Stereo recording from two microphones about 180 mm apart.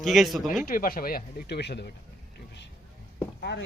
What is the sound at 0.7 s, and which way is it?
Speech, 55° left (ahead or behind).